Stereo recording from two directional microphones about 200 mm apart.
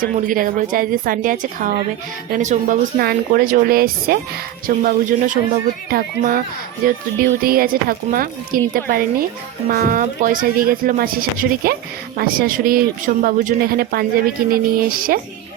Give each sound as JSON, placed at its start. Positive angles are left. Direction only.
{"t": 0.0, "sound": "speech", "side_deg": -45}